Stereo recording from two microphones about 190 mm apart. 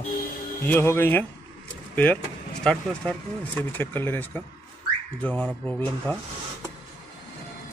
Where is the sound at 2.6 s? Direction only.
5° left (ahead or behind).